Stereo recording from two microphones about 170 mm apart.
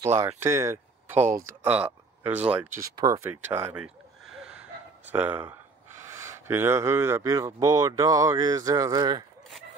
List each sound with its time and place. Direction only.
0.0 s speech: 15° right (ahead or behind)
4.4 s gasp: 5° right (ahead or behind)
6.0 s speech: 15° right (ahead or behind)